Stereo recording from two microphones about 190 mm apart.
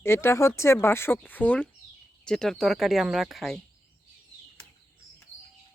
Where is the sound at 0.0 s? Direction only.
15° left (ahead or behind).